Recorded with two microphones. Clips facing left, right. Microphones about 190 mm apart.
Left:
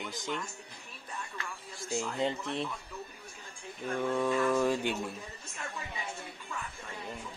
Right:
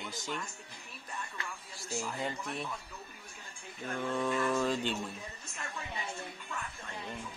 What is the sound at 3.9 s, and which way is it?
Speech, 10° left (ahead or behind).